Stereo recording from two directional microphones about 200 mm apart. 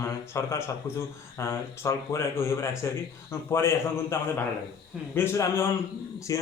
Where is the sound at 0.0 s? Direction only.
15° left (ahead or behind).